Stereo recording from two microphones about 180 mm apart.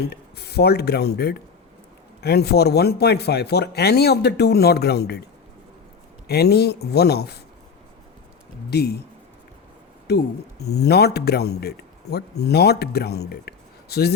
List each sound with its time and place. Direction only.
0.1 s speech: 65° left (ahead or behind)
6.2 s speech: 60° left (ahead or behind)
8.7 s speech: 65° left (ahead or behind)
10.7 s speech: 65° left (ahead or behind)